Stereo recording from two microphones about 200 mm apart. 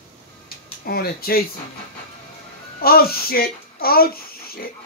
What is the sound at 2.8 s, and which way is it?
A child's voice, 50° left (ahead or behind).